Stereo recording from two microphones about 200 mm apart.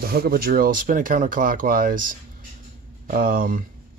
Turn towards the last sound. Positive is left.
turn(degrees=-45)  # may be behind; listen again after turning